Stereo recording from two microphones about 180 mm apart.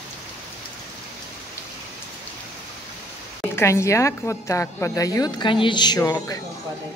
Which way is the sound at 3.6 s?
15° left (ahead or behind).